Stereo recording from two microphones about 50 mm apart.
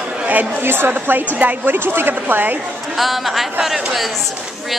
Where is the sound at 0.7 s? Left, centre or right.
Right.